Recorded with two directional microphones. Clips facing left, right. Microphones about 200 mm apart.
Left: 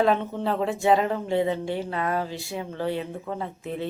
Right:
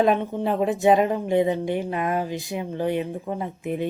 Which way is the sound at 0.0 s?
15° right (ahead or behind).